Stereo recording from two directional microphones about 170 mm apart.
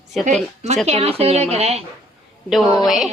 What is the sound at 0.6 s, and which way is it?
Speech, 40° right (ahead or behind).